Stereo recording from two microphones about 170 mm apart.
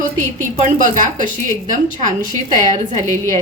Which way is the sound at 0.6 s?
50° right (ahead or behind).